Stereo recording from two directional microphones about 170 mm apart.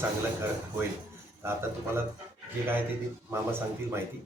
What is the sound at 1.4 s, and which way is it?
Speech, 15° right (ahead or behind).